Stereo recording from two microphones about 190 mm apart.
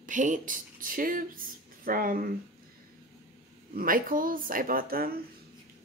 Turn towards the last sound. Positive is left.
turn(degrees=-50)  # may be behind; listen again after turning